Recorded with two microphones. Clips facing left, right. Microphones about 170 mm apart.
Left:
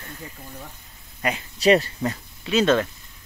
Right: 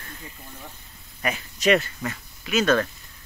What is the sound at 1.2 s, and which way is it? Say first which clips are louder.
Speech: left 3 dB; 30° left (ahead or behind).